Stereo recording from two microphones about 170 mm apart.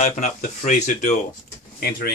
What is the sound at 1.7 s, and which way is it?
Speech, 65° left (ahead or behind).